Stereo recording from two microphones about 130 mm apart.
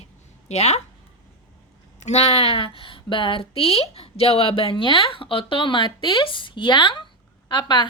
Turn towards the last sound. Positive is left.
turn(degrees=35)  # may be behind; listen again after turning